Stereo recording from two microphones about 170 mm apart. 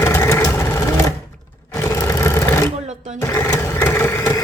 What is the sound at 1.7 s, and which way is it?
Vehicle, 15° left (ahead or behind).